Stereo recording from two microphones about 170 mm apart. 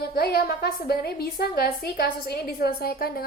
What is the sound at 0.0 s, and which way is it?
A woman's voice, 65° left (ahead or behind).